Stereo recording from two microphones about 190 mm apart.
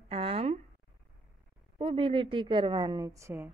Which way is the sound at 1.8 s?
30° right (ahead or behind).